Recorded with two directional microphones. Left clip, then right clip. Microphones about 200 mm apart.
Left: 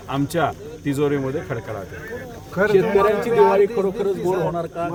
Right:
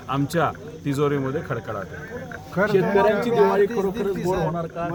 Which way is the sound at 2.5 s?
15° right (ahead or behind).